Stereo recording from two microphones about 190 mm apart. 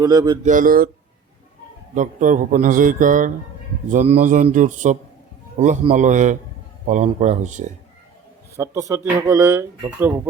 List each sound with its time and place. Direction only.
0.0 s speech: 20° right (ahead or behind)
0.4 s a man's voice: 45° right (ahead or behind)
2.0 s a man's voice: 40° right (ahead or behind)
8.5 s speech: 15° right (ahead or behind)